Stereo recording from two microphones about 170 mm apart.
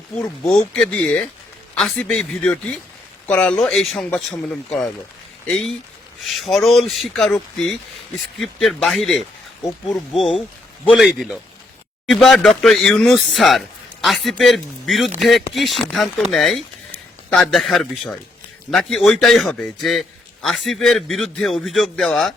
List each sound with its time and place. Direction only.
0.2 s a man's voice: 5° left (ahead or behind)
8.4 s a man's voice: centre (ahead or behind)